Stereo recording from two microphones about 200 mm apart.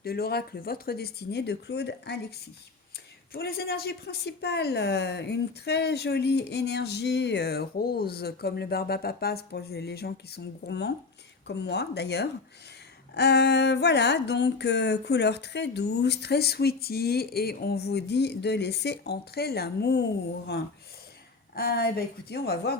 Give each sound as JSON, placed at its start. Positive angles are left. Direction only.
{"t": 0.0, "sound": "speech", "side_deg": 50}
{"t": 3.3, "sound": "a woman's voice", "side_deg": 50}
{"t": 21.5, "sound": "speech", "side_deg": 50}